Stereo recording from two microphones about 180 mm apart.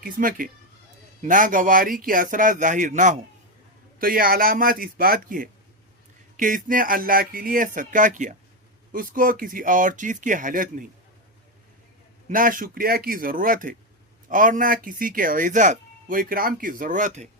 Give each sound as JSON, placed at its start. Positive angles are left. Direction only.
{"t": 0.0, "sound": "speech", "side_deg": -50}
{"t": 12.3, "sound": "speech", "side_deg": -50}